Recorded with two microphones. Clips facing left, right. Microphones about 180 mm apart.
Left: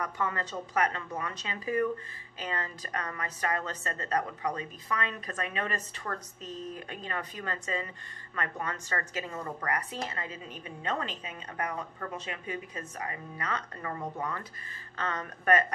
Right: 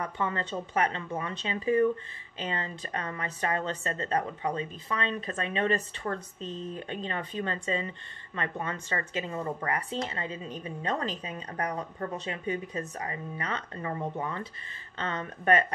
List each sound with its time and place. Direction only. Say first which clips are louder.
0.0 s speech: right 1 dB; 25° right (ahead or behind)